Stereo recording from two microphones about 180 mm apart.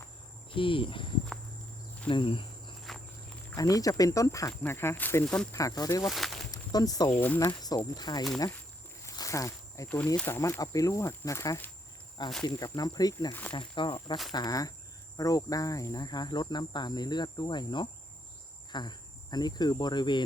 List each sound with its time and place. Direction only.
0.5 s speech: 30° left (ahead or behind)
2.0 s cricket: 30° left (ahead or behind)
3.5 s speech: 20° left (ahead or behind)
5.5 s speech: 20° left (ahead or behind)
6.1 s a sound: centre (ahead or behind)
6.5 s a sound: 20° left (ahead or behind)
7.2 s speech: 10° left (ahead or behind)